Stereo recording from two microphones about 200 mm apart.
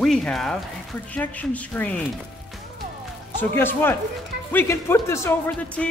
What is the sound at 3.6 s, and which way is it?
A woman's voice, 10° left (ahead or behind).